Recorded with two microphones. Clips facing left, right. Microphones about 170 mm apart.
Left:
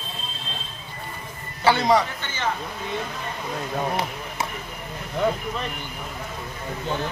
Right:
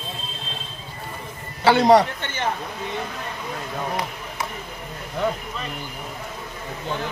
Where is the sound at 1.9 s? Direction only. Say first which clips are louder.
Right 5 dB; 60° right (ahead or behind).